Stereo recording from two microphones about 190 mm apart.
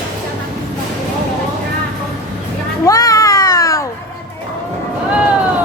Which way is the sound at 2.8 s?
20° left (ahead or behind).